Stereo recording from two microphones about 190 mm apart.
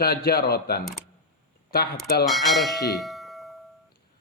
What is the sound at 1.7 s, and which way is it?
Speech, 55° left (ahead or behind).